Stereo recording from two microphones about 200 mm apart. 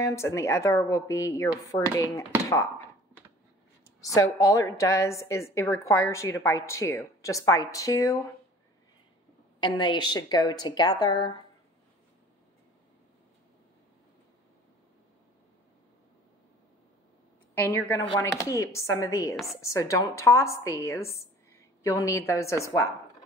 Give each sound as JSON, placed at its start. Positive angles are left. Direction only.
{"t": 0.0, "sound": "a woman's voice", "side_deg": 15}
{"t": 4.0, "sound": "a woman's voice", "side_deg": 15}
{"t": 9.6, "sound": "a woman's voice", "side_deg": 20}
{"t": 17.6, "sound": "a woman's voice", "side_deg": 10}
{"t": 19.3, "sound": "speech", "side_deg": 0}
{"t": 19.6, "sound": "a woman's voice", "side_deg": 15}